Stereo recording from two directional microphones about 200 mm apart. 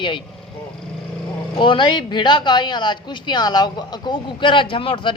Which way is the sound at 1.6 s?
25° left (ahead or behind).